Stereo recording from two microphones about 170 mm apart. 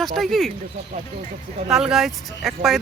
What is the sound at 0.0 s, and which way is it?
Speech, centre (ahead or behind).